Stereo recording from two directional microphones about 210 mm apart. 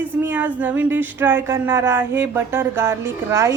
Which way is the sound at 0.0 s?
10° right (ahead or behind).